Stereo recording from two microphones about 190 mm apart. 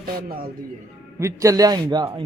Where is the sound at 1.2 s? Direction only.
15° right (ahead or behind).